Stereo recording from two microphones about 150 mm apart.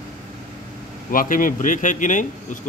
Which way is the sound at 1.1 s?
65° left (ahead or behind).